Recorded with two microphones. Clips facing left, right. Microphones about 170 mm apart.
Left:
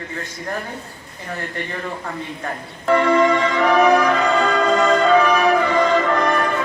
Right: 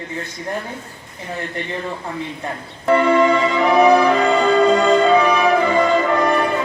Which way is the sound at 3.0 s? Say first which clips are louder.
Right 1 dB; 10° right (ahead or behind).